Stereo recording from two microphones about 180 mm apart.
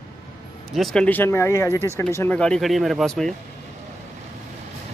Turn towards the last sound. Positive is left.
turn(degrees=0)  # may be behind; listen again after turning